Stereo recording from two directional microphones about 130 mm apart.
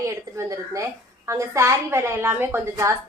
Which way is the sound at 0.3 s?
20° right (ahead or behind).